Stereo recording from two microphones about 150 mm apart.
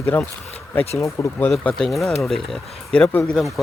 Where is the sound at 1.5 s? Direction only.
5° left (ahead or behind).